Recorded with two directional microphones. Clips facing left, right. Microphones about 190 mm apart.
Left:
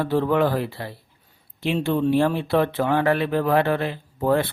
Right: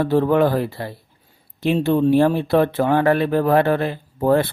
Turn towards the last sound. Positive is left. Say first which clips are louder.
# right 4 dB
turn(degrees=-45)  # may be behind; listen again after turning